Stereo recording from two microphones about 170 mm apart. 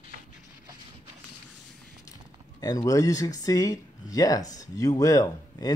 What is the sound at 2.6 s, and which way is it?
Speech, 20° left (ahead or behind).